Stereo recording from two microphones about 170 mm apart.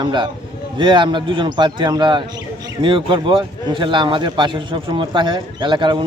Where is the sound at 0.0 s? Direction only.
25° right (ahead or behind).